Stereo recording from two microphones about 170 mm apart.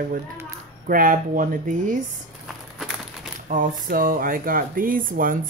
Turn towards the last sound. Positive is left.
turn(degrees=-55)  # may be behind; listen again after turning